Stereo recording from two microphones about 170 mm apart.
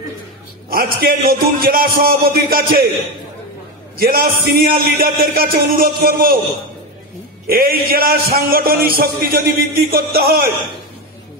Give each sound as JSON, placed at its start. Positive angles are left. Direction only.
{"t": 0.7, "sound": "a man's voice", "side_deg": -60}
{"t": 3.9, "sound": "a man's voice", "side_deg": -60}
{"t": 7.4, "sound": "a man's voice", "side_deg": -60}